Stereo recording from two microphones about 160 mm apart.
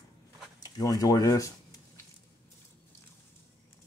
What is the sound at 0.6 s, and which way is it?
Speech, 25° left (ahead or behind).